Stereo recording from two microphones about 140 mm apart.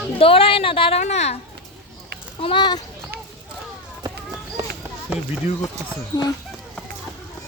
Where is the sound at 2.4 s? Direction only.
35° left (ahead or behind).